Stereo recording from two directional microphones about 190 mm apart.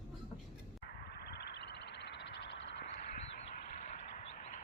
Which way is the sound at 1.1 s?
60° left (ahead or behind).